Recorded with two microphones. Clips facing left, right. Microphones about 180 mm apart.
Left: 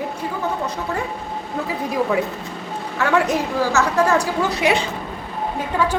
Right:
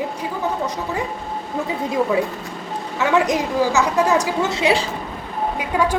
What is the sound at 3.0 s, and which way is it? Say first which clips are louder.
A woman's voice: right 1 dB; 15° right (ahead or behind).